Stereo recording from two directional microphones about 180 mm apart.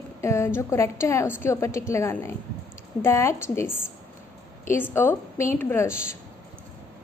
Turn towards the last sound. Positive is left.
turn(degrees=15)  # may be behind; listen again after turning